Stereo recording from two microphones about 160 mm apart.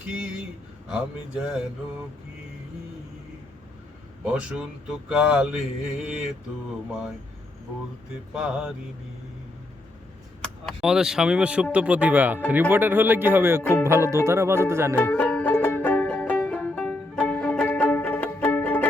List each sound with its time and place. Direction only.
0.9 s speech: 5° right (ahead or behind)
4.3 s speech: 5° right (ahead or behind)
8.1 s speech: 5° right (ahead or behind)
10.4 s speech: centre (ahead or behind)
13.6 s speech: 10° left (ahead or behind)
13.8 s speech: 15° right (ahead or behind)
14.9 s music: 10° left (ahead or behind)